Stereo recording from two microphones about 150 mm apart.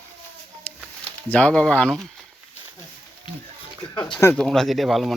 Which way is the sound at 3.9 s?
30° left (ahead or behind).